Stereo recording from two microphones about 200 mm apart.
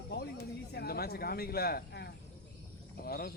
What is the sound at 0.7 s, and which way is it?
Speech, 50° left (ahead or behind).